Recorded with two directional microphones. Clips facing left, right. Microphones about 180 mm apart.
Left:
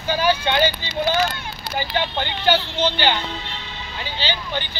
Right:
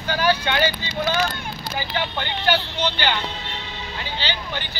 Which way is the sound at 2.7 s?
25° left (ahead or behind).